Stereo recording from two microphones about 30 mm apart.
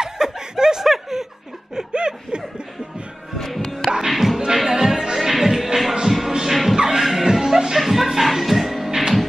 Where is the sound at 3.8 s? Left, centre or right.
Centre.